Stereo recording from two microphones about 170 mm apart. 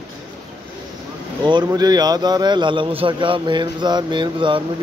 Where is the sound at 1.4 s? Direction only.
25° right (ahead or behind).